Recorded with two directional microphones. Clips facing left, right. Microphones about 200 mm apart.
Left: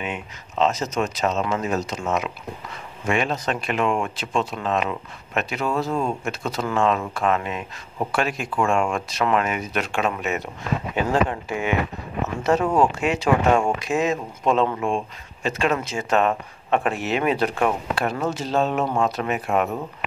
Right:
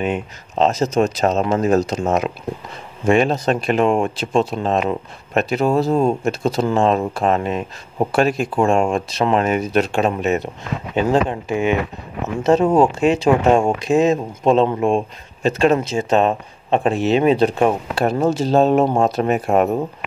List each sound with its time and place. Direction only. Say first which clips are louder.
0.0 s speech: right 9 dB; 35° right (ahead or behind)